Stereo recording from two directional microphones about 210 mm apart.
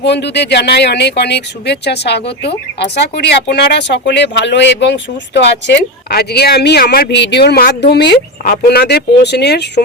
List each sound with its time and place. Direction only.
0.0 s speech: 55° left (ahead or behind)